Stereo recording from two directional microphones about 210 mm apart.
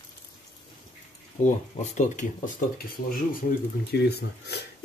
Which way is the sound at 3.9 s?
50° left (ahead or behind).